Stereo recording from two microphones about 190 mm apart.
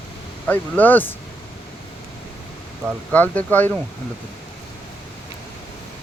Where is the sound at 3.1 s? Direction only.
10° left (ahead or behind).